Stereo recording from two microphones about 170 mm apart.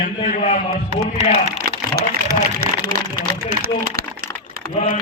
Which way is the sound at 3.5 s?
55° right (ahead or behind).